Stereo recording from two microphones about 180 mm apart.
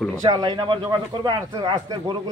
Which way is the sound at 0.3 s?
25° right (ahead or behind).